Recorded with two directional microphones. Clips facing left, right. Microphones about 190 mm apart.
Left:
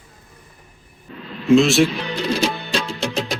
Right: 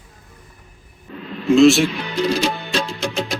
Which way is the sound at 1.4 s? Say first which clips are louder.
Right 2 dB; centre (ahead or behind).